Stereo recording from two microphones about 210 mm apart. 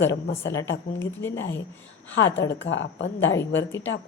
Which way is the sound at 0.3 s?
60° left (ahead or behind).